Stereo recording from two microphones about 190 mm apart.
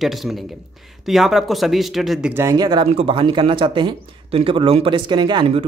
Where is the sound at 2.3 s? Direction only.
15° right (ahead or behind).